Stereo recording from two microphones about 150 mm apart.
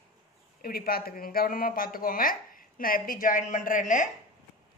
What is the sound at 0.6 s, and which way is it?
Speech, 85° left.